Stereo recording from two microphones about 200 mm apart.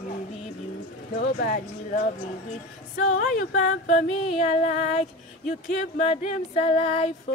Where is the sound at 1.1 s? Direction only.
50° left (ahead or behind).